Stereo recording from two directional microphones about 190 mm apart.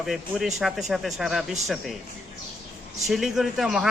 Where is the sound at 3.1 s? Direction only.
Centre (ahead or behind).